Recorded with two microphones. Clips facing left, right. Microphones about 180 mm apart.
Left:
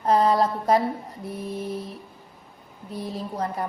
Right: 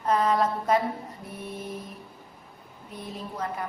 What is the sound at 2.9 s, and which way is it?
Speech, 35° left (ahead or behind).